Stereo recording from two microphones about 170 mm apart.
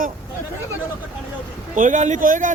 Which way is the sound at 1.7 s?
45° right (ahead or behind).